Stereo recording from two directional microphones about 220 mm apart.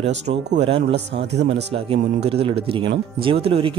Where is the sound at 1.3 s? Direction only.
55° right (ahead or behind).